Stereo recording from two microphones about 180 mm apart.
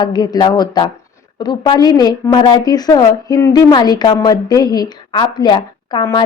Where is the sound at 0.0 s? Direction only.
20° left (ahead or behind).